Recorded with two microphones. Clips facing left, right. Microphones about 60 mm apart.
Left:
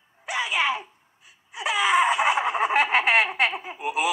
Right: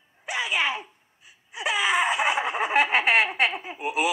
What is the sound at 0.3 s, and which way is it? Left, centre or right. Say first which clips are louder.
Babbling: left 1 dB; centre.